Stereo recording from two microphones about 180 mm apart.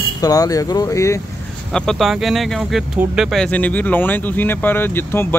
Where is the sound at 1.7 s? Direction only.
Centre (ahead or behind).